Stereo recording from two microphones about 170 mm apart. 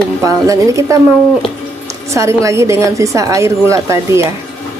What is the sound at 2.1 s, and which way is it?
A woman's voice, 20° right (ahead or behind).